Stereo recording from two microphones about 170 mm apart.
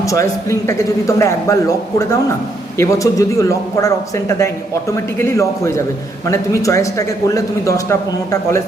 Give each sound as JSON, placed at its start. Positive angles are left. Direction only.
{"t": 0.0, "sound": "a man's voice", "side_deg": 20}